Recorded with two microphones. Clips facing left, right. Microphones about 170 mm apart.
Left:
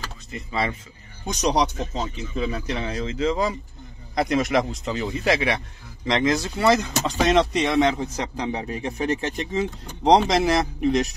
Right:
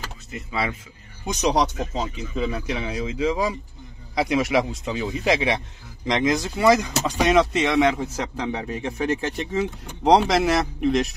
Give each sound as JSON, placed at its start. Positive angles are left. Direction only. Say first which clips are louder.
{"t": 0.3, "sound": "a man's voice", "louder": "left 1 dB", "side_deg": -5}